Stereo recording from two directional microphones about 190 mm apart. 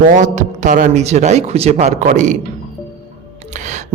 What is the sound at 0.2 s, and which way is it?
A woman's voice, 40° right (ahead or behind).